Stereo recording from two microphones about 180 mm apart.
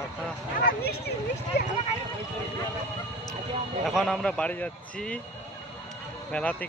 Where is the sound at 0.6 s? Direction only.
55° left (ahead or behind).